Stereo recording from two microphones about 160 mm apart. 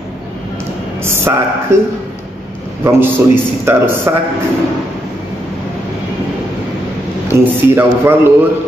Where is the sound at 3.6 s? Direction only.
15° right (ahead or behind).